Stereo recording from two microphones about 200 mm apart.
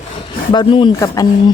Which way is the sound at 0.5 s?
25° left (ahead or behind).